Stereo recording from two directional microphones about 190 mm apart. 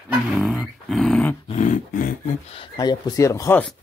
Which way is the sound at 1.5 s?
40° left (ahead or behind).